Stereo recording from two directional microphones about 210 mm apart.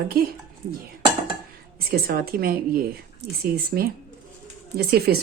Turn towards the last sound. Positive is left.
turn(degrees=-45)  # may be behind; listen again after turning